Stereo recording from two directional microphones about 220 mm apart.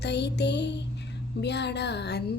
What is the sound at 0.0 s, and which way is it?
Music, 50° left (ahead or behind).